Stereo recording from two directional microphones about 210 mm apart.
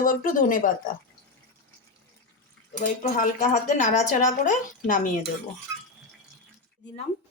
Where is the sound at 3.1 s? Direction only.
40° left (ahead or behind).